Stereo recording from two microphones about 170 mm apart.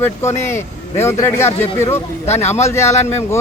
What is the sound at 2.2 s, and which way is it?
Speech, 40° left (ahead or behind).